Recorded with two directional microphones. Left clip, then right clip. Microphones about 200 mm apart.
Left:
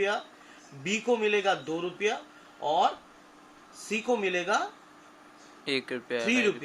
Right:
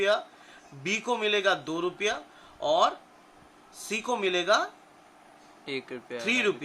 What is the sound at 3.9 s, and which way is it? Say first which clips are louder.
Speech: even; 45° right (ahead or behind).